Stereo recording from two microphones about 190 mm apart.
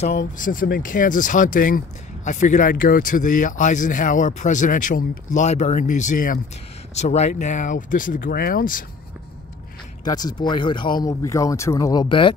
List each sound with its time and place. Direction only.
0.4 s speech: 45° left (ahead or behind)
10.0 s speech: 20° left (ahead or behind)